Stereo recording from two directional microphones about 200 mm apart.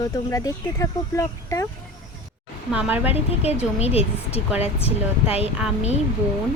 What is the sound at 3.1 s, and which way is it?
Speech, 30° left (ahead or behind).